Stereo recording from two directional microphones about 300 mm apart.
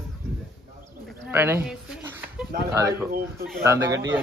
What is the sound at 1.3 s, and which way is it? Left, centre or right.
A man's voice, centre.